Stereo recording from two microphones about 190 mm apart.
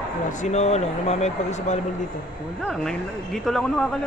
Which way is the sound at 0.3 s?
40° left (ahead or behind).